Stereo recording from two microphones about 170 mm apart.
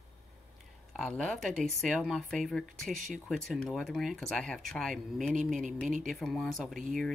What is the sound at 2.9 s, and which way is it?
Speech, 50° right (ahead or behind).